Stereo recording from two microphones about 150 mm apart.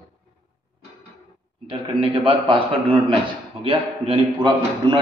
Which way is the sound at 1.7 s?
35° right (ahead or behind).